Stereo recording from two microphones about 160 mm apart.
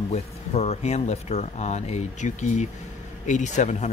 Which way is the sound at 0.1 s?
40° left (ahead or behind).